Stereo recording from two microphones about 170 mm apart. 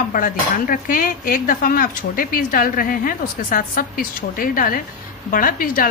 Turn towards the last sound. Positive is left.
turn(degrees=55)  # may be behind; listen again after turning